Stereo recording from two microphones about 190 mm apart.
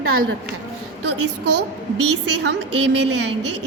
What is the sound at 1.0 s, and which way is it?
A woman's voice, 65° right (ahead or behind).